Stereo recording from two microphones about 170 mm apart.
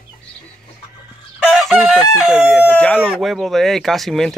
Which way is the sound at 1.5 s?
Centre (ahead or behind).